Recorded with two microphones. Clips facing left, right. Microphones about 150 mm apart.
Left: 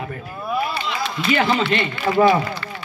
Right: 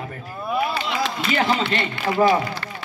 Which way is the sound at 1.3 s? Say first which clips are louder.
Left 3 dB; 35° right (ahead or behind).